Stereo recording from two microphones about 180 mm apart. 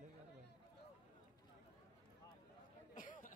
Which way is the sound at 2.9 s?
50° left (ahead or behind).